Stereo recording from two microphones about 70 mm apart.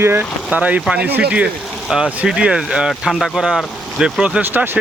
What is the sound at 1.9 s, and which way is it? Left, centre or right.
Speech, centre.